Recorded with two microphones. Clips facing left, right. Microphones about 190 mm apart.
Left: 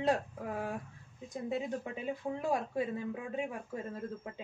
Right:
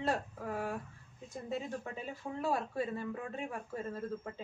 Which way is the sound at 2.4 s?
15° left (ahead or behind).